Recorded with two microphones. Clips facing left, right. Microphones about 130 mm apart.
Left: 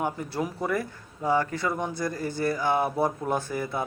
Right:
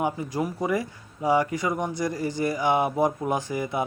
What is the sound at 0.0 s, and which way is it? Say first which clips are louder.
Speech: right 2 dB; 10° right (ahead or behind).